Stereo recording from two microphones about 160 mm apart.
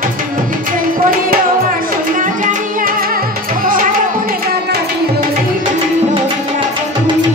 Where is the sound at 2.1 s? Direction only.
60° right (ahead or behind).